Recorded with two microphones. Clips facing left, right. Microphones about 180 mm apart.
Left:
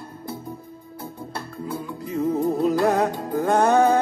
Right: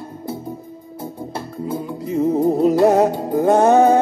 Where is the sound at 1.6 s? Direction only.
25° right (ahead or behind).